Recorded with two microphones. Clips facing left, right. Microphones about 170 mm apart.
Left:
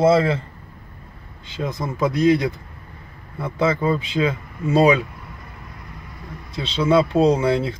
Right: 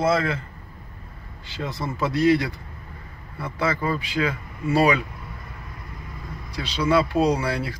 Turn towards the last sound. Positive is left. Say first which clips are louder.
# left 5 dB
turn(degrees=20)  # may be behind; listen again after turning